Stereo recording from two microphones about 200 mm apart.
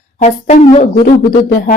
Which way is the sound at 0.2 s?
35° left (ahead or behind).